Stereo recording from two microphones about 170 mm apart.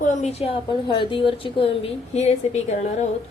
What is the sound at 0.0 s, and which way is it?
A woman's voice, 40° left (ahead or behind).